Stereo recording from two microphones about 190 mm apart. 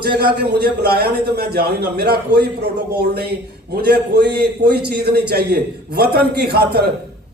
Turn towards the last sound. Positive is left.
turn(degrees=-55)  # may be behind; listen again after turning